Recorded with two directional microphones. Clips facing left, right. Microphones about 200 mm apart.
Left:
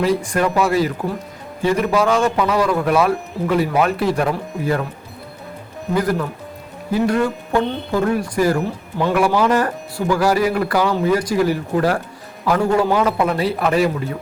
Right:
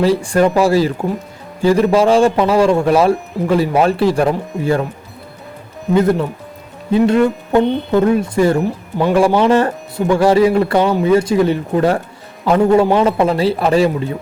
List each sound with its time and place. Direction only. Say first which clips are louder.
0.0 s speech: right 5 dB; 30° right (ahead or behind)
5.9 s speech: right 6 dB; 25° right (ahead or behind)